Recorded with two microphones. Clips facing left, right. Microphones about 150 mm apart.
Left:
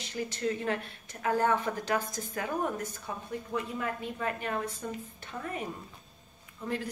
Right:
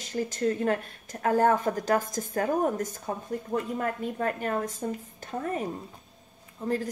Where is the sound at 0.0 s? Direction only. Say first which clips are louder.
Right 5 dB; 45° right (ahead or behind).